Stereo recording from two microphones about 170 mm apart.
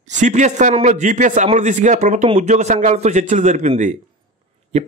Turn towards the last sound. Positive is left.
turn(degrees=-40)  # may be behind; listen again after turning